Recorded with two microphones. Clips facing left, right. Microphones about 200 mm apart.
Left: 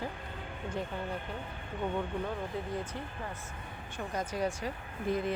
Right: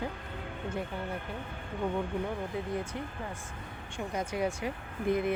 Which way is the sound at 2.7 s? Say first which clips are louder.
Right 2 dB; 10° right (ahead or behind).